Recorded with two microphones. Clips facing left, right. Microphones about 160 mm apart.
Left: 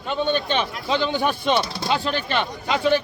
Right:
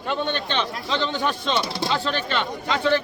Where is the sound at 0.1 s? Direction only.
5° left (ahead or behind).